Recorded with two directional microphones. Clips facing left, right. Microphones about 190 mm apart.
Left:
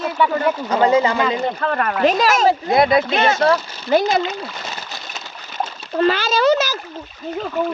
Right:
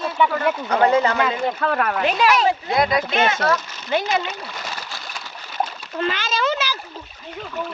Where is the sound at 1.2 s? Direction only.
Centre (ahead or behind).